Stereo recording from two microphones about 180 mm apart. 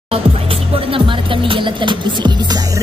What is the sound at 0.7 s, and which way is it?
Speech, 30° right (ahead or behind).